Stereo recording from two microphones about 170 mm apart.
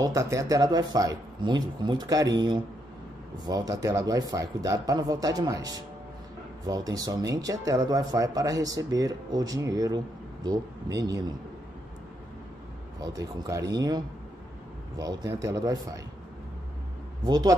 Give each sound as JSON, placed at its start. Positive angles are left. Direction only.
{"t": 0.0, "sound": "speech", "side_deg": -20}
{"t": 13.0, "sound": "speech", "side_deg": -20}
{"t": 17.3, "sound": "speech", "side_deg": -25}